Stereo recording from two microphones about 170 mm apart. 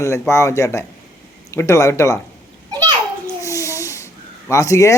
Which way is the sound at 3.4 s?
20° left (ahead or behind).